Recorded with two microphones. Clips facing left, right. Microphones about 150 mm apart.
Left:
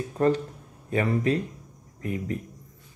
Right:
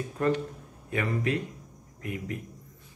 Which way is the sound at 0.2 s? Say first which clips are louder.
Left 4 dB; 35° left (ahead or behind).